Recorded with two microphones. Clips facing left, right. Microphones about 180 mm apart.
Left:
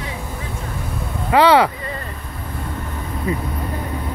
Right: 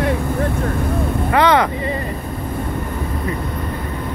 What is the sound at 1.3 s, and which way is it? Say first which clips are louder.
Speech: left 2 dB; 10° left (ahead or behind).